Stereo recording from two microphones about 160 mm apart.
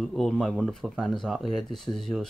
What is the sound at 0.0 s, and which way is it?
Speech, centre (ahead or behind).